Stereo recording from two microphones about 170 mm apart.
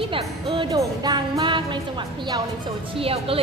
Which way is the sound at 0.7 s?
25° right (ahead or behind).